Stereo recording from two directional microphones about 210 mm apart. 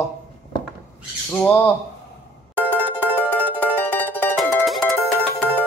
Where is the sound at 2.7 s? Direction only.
10° right (ahead or behind).